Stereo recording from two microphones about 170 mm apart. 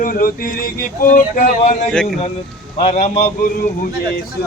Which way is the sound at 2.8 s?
40° left (ahead or behind).